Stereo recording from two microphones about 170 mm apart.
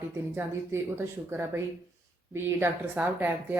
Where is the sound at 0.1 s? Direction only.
15° right (ahead or behind).